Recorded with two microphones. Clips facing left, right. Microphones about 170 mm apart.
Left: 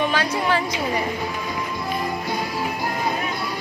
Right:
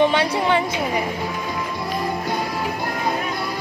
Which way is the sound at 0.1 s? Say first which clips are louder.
Right 3 dB; 25° right (ahead or behind).